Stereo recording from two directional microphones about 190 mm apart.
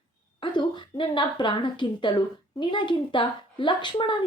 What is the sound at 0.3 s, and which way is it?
A woman's voice, 25° left (ahead or behind).